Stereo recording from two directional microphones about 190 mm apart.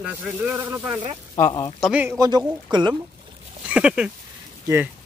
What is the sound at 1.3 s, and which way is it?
Speech, 20° left (ahead or behind).